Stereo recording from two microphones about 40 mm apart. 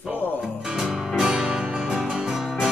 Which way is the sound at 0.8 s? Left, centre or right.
Centre.